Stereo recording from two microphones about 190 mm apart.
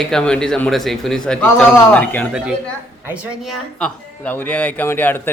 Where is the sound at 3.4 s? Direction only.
5° left (ahead or behind).